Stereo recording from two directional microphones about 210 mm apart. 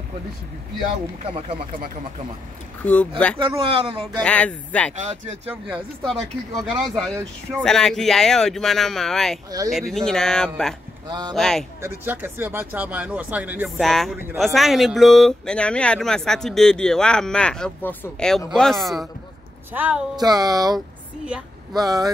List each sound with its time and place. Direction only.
1.2 s speech: 25° right (ahead or behind)
2.8 s speech: 5° left (ahead or behind)
3.3 s speech: 25° right (ahead or behind)
4.2 s speech: 5° left (ahead or behind)
6.0 s speech: centre (ahead or behind)
11.1 s speech: 20° right (ahead or behind)
11.3 s speech: centre (ahead or behind)
11.8 s speech: 10° right (ahead or behind)